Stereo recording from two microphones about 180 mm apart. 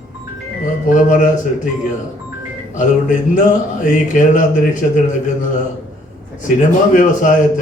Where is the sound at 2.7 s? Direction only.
45° left (ahead or behind).